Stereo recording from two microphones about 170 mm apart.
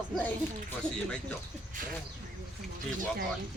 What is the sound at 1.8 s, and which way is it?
Speech, 55° right (ahead or behind).